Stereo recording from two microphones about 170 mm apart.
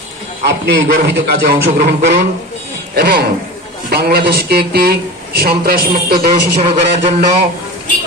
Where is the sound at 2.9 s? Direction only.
70° right (ahead or behind).